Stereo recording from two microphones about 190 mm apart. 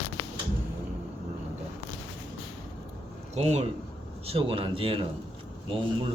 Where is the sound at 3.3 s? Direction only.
35° right (ahead or behind).